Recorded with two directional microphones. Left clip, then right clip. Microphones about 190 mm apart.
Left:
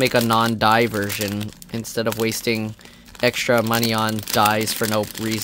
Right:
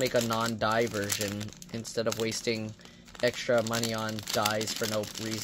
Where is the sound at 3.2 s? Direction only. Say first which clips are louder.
Left 9 dB; 45° left (ahead or behind).